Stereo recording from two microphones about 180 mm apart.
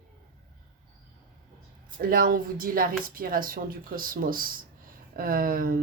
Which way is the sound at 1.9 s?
55° right (ahead or behind).